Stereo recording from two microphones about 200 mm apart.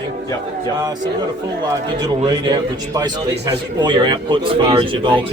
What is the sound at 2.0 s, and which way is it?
Speech, 20° right (ahead or behind).